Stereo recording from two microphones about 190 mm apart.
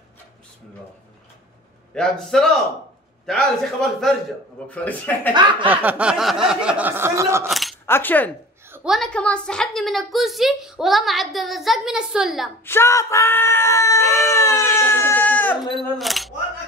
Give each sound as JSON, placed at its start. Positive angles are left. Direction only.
{"t": 2.0, "sound": "a woman's voice", "side_deg": 5}
{"t": 5.3, "sound": "speech", "side_deg": -25}
{"t": 5.7, "sound": "speech", "side_deg": -10}
{"t": 7.4, "sound": "a woman's voice", "side_deg": 0}
{"t": 7.8, "sound": "speech", "side_deg": 10}
{"t": 8.6, "sound": "a woman's voice", "side_deg": -5}
{"t": 12.6, "sound": "speech", "side_deg": 15}